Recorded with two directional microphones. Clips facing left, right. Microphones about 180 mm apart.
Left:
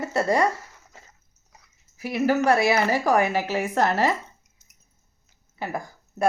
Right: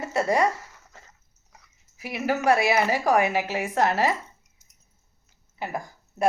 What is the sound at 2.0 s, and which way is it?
Speech, 10° right (ahead or behind).